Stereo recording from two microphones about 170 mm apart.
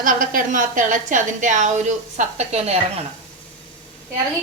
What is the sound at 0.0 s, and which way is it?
A woman's voice, 55° right (ahead or behind).